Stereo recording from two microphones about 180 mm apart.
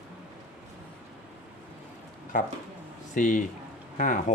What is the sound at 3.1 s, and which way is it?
Speech, 45° left (ahead or behind).